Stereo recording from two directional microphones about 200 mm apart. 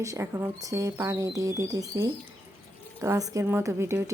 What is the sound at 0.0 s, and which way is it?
Speech, 15° right (ahead or behind).